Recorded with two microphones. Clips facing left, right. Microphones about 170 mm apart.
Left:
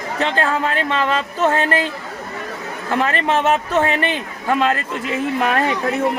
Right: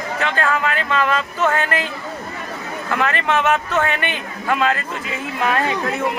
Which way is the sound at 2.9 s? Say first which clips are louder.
Left 2 dB; 30° left (ahead or behind).